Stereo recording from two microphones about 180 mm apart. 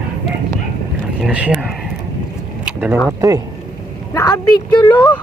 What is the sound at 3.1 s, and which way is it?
Speech, 20° right (ahead or behind).